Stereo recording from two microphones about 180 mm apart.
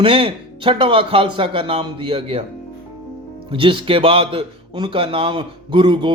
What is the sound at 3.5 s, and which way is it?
Speech, 30° right (ahead or behind).